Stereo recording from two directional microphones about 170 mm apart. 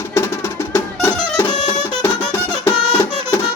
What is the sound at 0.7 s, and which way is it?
Music, 15° left (ahead or behind).